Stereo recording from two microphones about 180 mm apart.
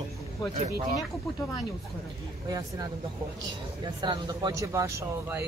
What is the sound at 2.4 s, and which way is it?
Speech, 20° right (ahead or behind).